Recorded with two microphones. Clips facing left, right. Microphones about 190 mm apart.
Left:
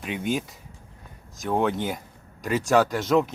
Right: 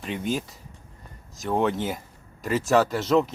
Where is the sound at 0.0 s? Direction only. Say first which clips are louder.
Left 1 dB; 5° left (ahead or behind).